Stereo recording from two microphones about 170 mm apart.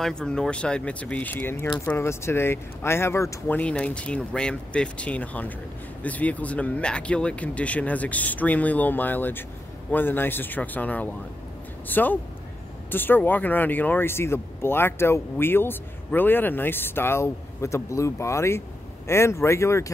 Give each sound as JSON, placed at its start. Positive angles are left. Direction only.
{"t": 0.0, "sound": "speech", "side_deg": 5}